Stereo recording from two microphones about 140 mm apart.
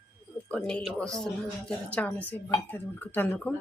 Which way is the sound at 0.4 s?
10° left (ahead or behind).